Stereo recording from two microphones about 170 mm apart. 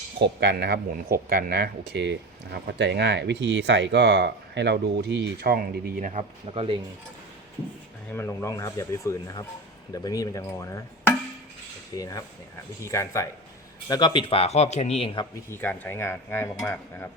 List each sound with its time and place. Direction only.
0.2 s speech: 80° right; by 6.1 s 60° right (ahead or behind)
6.1 s speech: 35° right (ahead or behind)
8.1 s speech: 15° left (ahead or behind); by 15.3 s 30° left (ahead or behind)
15.4 s speech: 10° left (ahead or behind)